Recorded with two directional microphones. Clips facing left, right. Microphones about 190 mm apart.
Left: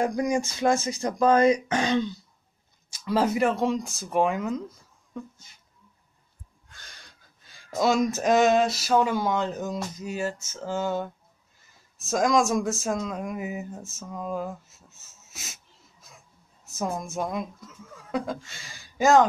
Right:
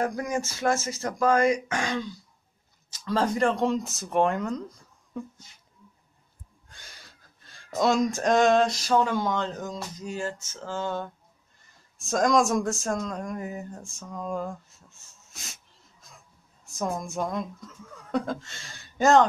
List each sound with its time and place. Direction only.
0.0 s speech: 15° left (ahead or behind)
2.9 s speech: 10° left (ahead or behind)
6.9 s speech: 5° right (ahead or behind)